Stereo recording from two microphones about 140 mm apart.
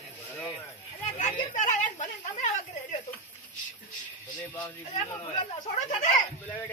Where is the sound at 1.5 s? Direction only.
65° left (ahead or behind).